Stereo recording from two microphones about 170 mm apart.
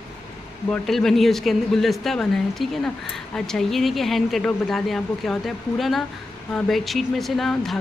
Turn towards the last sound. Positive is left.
turn(degrees=0)  # may be behind; listen again after turning